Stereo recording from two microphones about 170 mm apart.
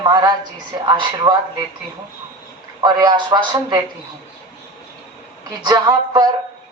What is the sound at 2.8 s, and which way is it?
Speech, 25° right (ahead or behind).